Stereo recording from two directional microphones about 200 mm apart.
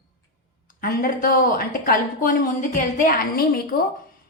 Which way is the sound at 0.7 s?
45° left (ahead or behind).